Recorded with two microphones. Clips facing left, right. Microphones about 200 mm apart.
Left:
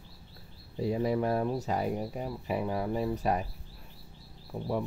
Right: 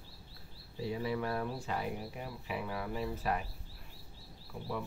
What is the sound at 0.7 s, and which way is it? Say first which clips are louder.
Speech: left 7 dB; 45° left (ahead or behind).